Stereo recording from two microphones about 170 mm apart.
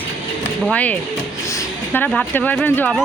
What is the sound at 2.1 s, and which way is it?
Speech, 10° left (ahead or behind).